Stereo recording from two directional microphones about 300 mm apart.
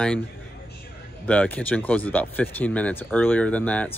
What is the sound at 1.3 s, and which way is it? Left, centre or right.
Speech, centre.